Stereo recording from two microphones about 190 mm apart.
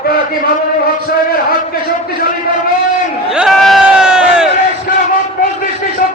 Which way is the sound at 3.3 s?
Centre (ahead or behind).